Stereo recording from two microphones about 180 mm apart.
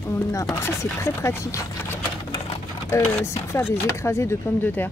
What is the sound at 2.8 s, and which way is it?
Speech, 15° left (ahead or behind).